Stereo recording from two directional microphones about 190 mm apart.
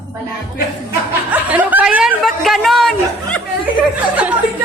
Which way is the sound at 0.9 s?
10° right (ahead or behind).